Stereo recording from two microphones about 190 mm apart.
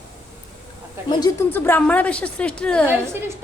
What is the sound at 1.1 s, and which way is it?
Speech, 20° left (ahead or behind).